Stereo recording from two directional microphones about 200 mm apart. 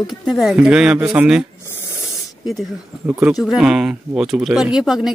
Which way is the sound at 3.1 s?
10° right (ahead or behind).